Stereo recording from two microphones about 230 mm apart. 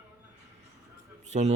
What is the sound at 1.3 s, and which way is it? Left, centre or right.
Speech, right.